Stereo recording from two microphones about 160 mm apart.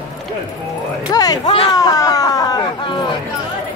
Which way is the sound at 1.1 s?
25° left (ahead or behind).